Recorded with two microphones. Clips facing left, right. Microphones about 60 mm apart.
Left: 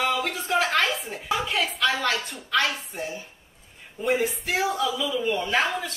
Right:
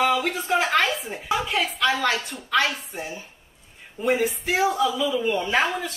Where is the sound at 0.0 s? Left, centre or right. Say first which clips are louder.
Right 4 dB; centre.